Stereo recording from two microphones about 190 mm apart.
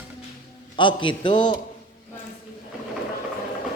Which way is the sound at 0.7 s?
25° left (ahead or behind).